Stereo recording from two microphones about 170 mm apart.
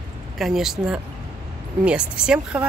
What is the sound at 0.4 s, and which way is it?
Speech, centre (ahead or behind).